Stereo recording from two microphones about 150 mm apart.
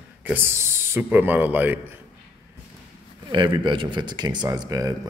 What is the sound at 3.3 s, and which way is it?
A man's voice, 30° right (ahead or behind).